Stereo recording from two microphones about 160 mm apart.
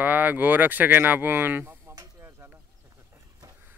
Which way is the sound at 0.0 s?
10° right (ahead or behind).